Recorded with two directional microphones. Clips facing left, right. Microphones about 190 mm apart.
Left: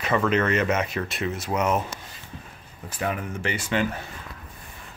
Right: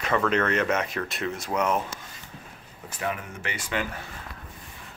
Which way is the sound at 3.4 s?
30° left (ahead or behind).